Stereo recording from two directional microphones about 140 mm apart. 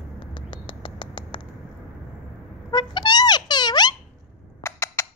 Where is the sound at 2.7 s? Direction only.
30° left (ahead or behind).